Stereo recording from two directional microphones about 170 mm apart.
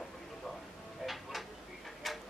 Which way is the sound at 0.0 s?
Centre (ahead or behind).